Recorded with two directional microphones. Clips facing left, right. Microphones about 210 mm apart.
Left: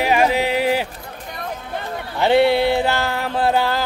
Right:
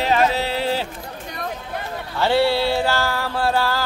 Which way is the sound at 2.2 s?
20° left (ahead or behind).